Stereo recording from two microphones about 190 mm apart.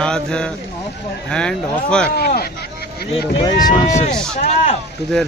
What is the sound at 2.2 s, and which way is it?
Speech, 55° left (ahead or behind).